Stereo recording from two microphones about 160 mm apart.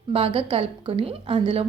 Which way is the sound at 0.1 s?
35° right (ahead or behind).